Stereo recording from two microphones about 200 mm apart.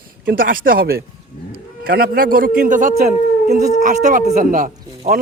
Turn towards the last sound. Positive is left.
turn(degrees=-40)  # may be behind; listen again after turning